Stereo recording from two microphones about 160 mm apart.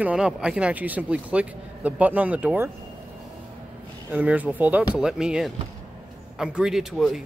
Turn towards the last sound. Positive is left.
turn(degrees=0)  # may be behind; listen again after turning